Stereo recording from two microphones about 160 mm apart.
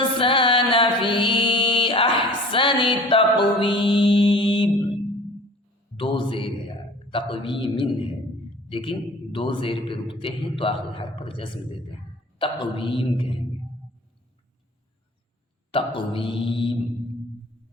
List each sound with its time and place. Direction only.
0.2 s music: 35° left (ahead or behind)
6.0 s a sound: 35° left (ahead or behind)
8.7 s a man's voice: 35° left (ahead or behind)
15.7 s a man's voice: 35° left (ahead or behind)